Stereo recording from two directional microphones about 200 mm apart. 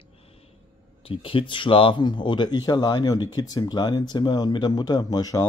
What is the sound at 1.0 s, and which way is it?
Speech, 25° left (ahead or behind).